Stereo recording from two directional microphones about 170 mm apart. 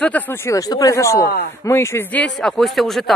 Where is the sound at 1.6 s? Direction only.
15° left (ahead or behind).